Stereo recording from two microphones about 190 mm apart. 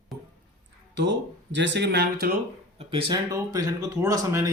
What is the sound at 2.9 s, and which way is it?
Speech, 25° right (ahead or behind).